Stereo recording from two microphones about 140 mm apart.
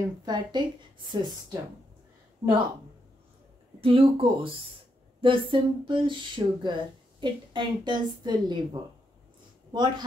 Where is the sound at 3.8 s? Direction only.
40° right (ahead or behind).